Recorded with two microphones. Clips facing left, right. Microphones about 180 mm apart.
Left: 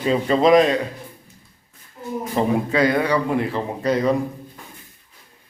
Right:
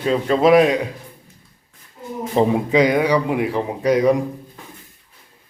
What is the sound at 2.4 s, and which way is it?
Speech, 15° right (ahead or behind).